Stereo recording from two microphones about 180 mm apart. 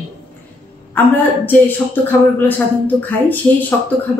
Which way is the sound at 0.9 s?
10° left (ahead or behind).